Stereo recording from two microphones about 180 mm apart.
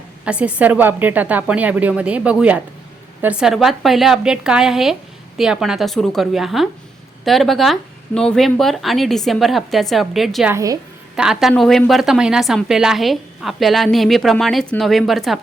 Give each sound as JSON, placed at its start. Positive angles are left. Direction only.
{"t": 0.3, "sound": "a woman's voice", "side_deg": -5}
{"t": 10.5, "sound": "a woman's voice", "side_deg": -20}
{"t": 11.2, "sound": "a woman's voice", "side_deg": -5}